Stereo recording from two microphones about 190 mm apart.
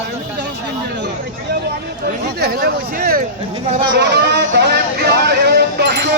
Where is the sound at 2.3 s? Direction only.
55° right (ahead or behind).